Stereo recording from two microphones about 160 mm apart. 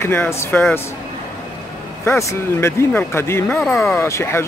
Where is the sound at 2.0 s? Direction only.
15° left (ahead or behind).